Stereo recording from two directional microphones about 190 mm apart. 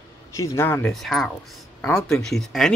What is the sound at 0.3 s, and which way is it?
Speech, 15° left (ahead or behind).